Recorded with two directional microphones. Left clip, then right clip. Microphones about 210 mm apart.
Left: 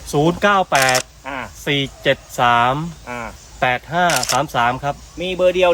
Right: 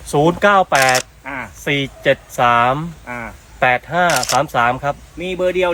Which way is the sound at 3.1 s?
45° left (ahead or behind).